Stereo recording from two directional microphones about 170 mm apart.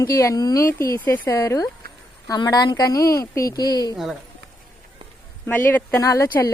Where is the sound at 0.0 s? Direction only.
15° left (ahead or behind).